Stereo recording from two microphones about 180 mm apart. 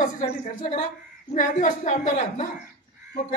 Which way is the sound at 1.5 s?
45° left (ahead or behind).